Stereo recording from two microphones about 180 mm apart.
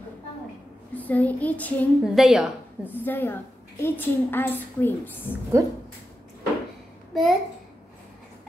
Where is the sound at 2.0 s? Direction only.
Centre (ahead or behind).